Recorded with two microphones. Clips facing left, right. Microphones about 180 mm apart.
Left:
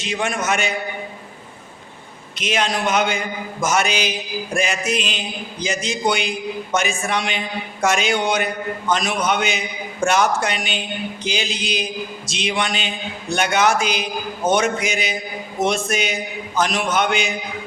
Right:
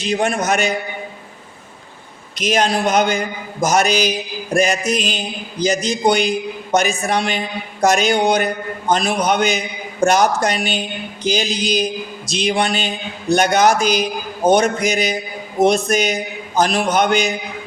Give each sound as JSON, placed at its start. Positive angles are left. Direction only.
{"t": 0.0, "sound": "a man's voice", "side_deg": -35}
{"t": 2.4, "sound": "a man's voice", "side_deg": -40}